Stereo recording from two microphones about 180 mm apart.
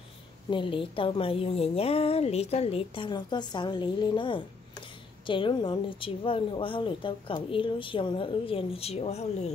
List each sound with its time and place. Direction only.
0.5 s a woman's voice: 30° left (ahead or behind)